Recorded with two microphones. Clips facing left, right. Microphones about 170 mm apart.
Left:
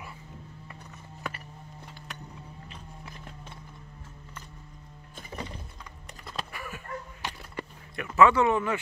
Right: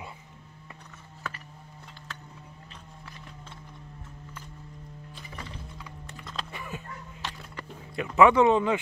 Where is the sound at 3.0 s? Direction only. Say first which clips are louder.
Left 1 dB; 15° left (ahead or behind).